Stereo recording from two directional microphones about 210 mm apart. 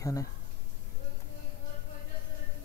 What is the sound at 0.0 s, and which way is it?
Speech, 15° left (ahead or behind).